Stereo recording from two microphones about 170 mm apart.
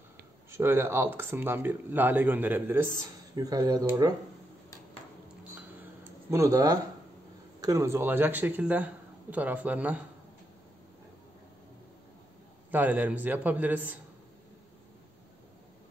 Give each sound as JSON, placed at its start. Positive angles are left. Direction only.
{"t": 0.5, "sound": "speech", "side_deg": -15}
{"t": 3.3, "sound": "speech", "side_deg": -20}
{"t": 6.3, "sound": "speech", "side_deg": -20}
{"t": 12.7, "sound": "speech", "side_deg": -10}